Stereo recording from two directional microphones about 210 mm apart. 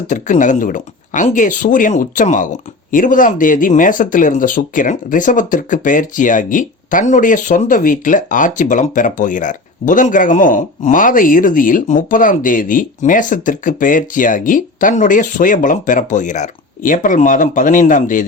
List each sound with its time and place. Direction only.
0.1 s speech: 35° left (ahead or behind)